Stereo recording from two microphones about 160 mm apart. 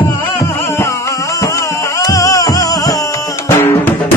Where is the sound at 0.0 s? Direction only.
20° left (ahead or behind).